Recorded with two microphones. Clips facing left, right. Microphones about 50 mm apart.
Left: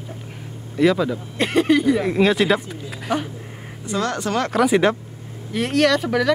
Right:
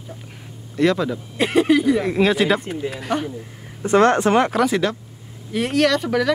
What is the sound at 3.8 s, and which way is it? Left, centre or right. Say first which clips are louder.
Speech: right 9 dB; right.